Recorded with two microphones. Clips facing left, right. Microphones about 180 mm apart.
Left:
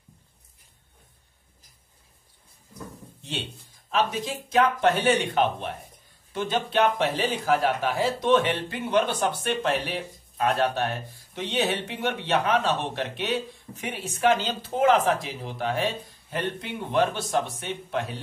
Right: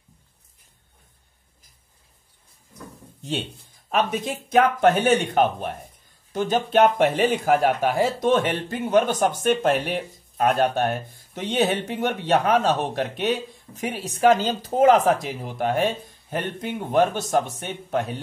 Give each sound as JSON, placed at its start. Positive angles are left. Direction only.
{"t": 3.9, "sound": "speech", "side_deg": -50}